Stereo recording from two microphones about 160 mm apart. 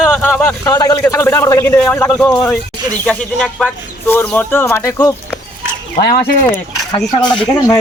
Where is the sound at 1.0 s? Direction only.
15° left (ahead or behind).